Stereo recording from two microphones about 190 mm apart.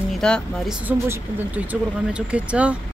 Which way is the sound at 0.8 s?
10° right (ahead or behind).